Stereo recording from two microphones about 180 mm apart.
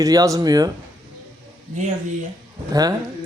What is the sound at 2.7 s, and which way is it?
Speech, 20° right (ahead or behind).